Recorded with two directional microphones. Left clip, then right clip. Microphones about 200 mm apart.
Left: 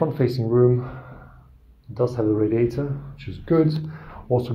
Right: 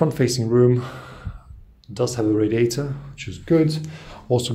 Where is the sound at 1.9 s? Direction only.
30° right (ahead or behind).